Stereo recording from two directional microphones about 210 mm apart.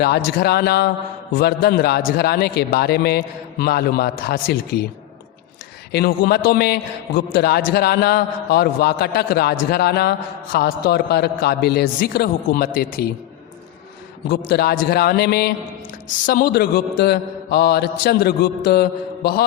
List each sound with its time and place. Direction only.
0.0 s a man's voice: 50° left (ahead or behind)
5.9 s a man's voice: 50° left (ahead or behind)
14.3 s a man's voice: 50° left (ahead or behind)